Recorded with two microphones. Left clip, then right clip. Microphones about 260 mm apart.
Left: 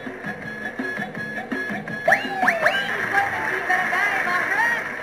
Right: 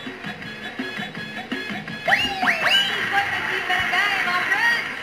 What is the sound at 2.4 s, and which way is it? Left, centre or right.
Music, centre.